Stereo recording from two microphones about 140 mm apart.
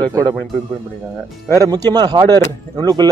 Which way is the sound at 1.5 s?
25° right (ahead or behind).